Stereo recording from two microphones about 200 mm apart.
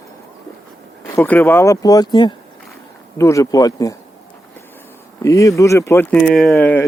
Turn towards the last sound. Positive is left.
turn(degrees=10)  # may be behind; listen again after turning